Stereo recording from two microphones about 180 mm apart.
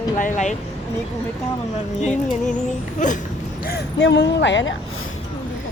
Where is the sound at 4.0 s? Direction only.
90° left.